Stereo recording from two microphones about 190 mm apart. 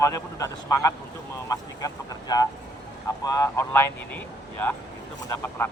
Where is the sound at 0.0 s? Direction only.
15° left (ahead or behind).